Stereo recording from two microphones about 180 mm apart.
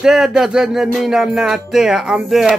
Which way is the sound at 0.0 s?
5° right (ahead or behind).